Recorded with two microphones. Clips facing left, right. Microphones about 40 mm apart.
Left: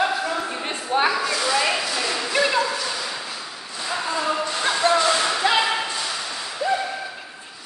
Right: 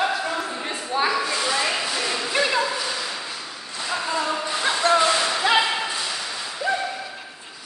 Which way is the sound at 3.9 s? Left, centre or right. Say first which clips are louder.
Left 1 dB; centre.